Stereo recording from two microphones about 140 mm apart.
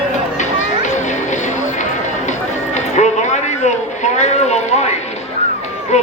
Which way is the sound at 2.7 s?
55° left (ahead or behind).